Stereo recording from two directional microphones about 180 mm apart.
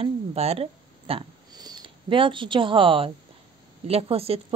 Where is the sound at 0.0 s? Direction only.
35° right (ahead or behind).